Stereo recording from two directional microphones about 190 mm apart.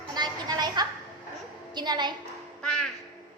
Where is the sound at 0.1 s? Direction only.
20° right (ahead or behind).